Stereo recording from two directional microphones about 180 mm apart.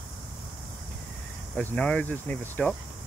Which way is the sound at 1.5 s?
5° left (ahead or behind).